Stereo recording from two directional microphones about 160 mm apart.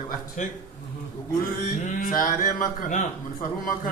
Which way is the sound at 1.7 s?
55° left (ahead or behind).